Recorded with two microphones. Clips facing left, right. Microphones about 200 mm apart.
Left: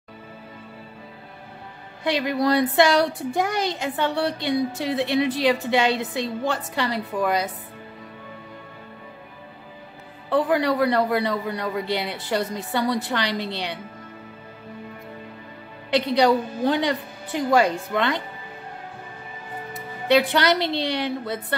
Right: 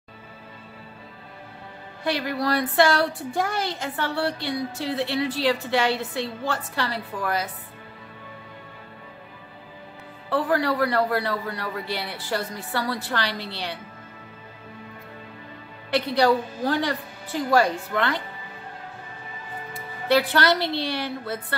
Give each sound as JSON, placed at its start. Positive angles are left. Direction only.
{"t": 2.0, "sound": "a child's voice", "side_deg": 20}
{"t": 10.3, "sound": "a child's voice", "side_deg": 20}
{"t": 15.9, "sound": "a child's voice", "side_deg": 15}
{"t": 19.7, "sound": "a woman's voice", "side_deg": 20}